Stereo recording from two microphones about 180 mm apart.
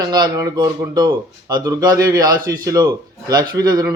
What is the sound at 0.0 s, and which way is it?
A man's voice, 20° right (ahead or behind).